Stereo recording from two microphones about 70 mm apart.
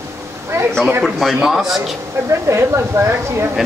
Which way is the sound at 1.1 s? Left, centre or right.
Centre.